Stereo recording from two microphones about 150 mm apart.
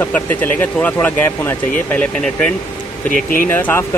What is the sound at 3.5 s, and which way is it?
Speech, 15° left (ahead or behind).